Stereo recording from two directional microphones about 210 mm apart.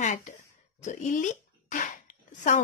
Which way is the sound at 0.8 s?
35° left (ahead or behind).